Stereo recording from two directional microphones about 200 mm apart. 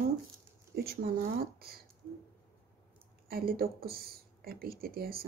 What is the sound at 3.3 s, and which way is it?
Speech, 50° right (ahead or behind).